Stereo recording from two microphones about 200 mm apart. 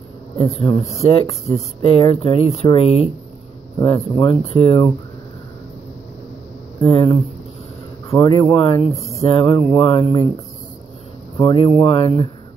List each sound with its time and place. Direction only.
0.5 s speech: 30° left (ahead or behind)
6.8 s speech: 25° left (ahead or behind)
11.3 s speech: 25° left (ahead or behind)